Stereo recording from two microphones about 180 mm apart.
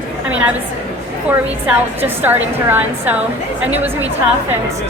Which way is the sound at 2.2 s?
10° right (ahead or behind).